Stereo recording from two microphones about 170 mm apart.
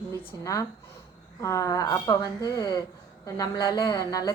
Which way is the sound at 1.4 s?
20° left (ahead or behind).